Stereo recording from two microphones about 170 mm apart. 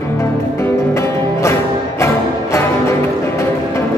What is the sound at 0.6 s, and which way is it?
Music, 15° left (ahead or behind).